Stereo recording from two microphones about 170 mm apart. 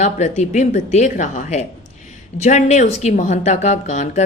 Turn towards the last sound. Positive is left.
turn(degrees=45)  # may be behind; listen again after turning